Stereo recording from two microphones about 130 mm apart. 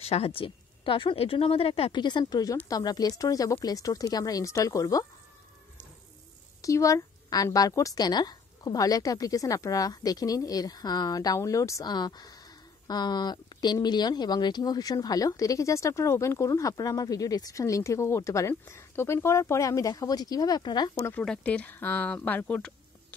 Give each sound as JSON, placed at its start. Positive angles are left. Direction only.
{"t": 0.0, "sound": "a woman's voice", "side_deg": 50}
{"t": 6.6, "sound": "speech", "side_deg": 25}
{"t": 21.1, "sound": "speech", "side_deg": 5}